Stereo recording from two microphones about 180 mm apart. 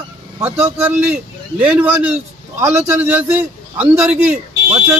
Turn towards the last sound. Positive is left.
turn(degrees=-5)  # may be behind; listen again after turning